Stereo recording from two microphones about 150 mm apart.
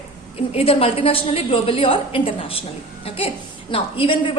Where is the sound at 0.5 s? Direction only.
40° left (ahead or behind).